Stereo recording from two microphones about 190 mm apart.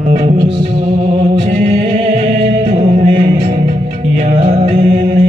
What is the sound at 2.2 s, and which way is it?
Music, 35° right (ahead or behind).